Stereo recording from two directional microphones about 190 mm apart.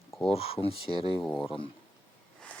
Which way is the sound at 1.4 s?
25° left (ahead or behind).